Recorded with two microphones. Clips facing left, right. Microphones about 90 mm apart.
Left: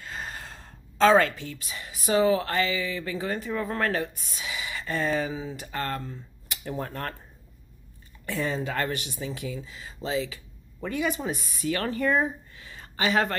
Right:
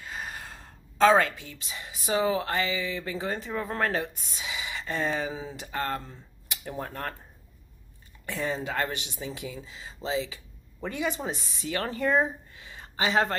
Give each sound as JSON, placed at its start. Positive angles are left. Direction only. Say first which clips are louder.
{"t": 0.0, "sound": "a woman's voice", "louder": "left 1 dB", "side_deg": -10}
{"t": 6.6, "sound": "speech", "louder": "left 2 dB", "side_deg": -5}
{"t": 8.3, "sound": "speech", "louder": "left 2 dB", "side_deg": -15}